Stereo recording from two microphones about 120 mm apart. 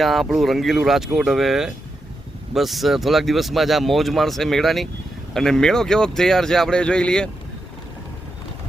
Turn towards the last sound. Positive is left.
turn(degrees=5)  # may be behind; listen again after turning